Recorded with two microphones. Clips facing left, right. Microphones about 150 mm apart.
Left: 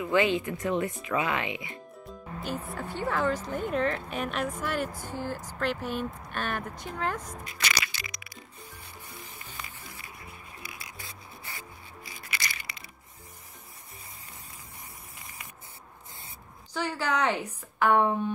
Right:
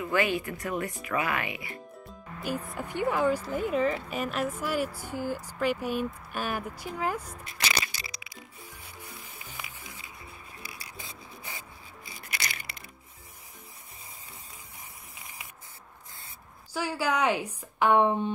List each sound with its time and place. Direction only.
0.0 s speech: 20° left (ahead or behind)
2.4 s a woman's voice: 10° right (ahead or behind)
7.8 s music: 35° right (ahead or behind)
9.0 s music: 10° right (ahead or behind)
10.6 s music: 35° right (ahead or behind)
11.0 s rub: 20° right (ahead or behind)
16.7 s a woman's voice: 10° right (ahead or behind)